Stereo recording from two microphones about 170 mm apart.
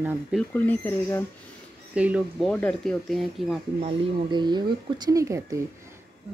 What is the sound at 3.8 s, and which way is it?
Speech, 30° right (ahead or behind).